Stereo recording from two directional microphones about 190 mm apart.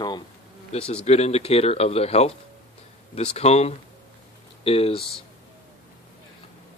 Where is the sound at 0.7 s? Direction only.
30° left (ahead or behind).